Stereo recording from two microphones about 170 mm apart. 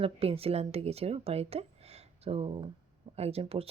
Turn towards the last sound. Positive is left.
turn(degrees=-35)  # may be behind; listen again after turning